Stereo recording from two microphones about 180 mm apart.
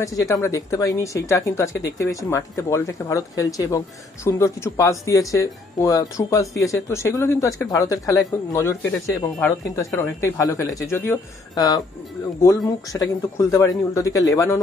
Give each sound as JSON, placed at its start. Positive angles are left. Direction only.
{"t": 0.0, "sound": "speech", "side_deg": 20}